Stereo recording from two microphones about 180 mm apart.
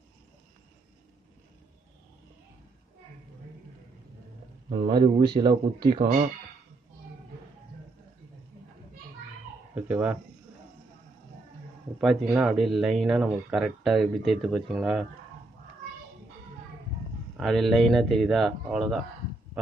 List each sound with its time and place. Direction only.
4.6 s speech: 30° right (ahead or behind)
9.8 s speech: 10° right (ahead or behind)
12.0 s speech: 5° right (ahead or behind)
17.4 s speech: centre (ahead or behind)